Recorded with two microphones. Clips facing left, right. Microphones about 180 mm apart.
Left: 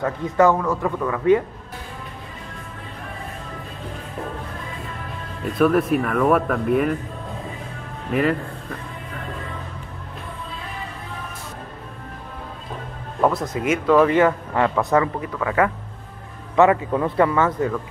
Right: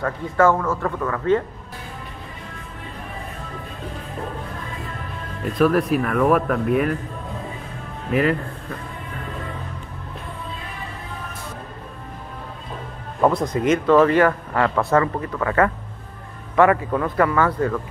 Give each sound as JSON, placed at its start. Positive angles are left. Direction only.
{"t": 0.0, "sound": "speech", "side_deg": 20}
{"t": 5.6, "sound": "speech", "side_deg": 0}
{"t": 8.1, "sound": "speech", "side_deg": 0}
{"t": 13.3, "sound": "speech", "side_deg": 5}
{"t": 16.5, "sound": "a man's voice", "side_deg": 20}